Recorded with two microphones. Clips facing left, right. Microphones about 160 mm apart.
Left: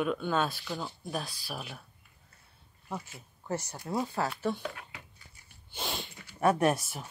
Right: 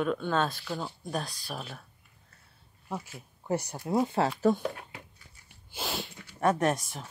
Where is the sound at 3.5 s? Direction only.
15° right (ahead or behind).